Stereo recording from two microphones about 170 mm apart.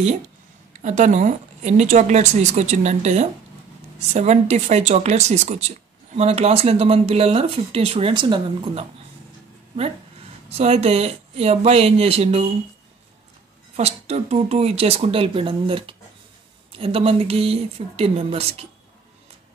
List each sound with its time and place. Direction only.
0.8 s speech: 45° right (ahead or behind)
10.5 s speech: 40° right (ahead or behind)
13.7 s speech: 40° right (ahead or behind)